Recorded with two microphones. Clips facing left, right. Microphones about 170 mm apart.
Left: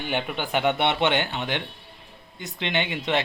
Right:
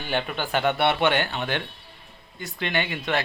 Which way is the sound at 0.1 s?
15° left (ahead or behind).